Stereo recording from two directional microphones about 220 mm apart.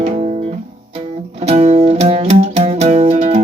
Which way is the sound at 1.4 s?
30° right (ahead or behind).